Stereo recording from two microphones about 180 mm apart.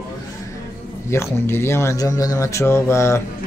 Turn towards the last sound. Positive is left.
turn(degrees=15)  # may be behind; listen again after turning